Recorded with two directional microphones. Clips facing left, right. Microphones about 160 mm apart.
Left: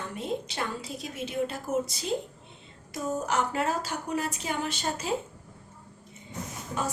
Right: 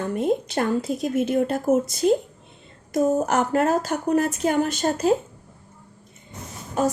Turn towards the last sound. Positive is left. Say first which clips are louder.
# right 10 dB
turn(degrees=-45)  # may be behind; listen again after turning